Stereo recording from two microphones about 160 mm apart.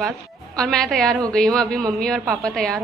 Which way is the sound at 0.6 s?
5° left (ahead or behind).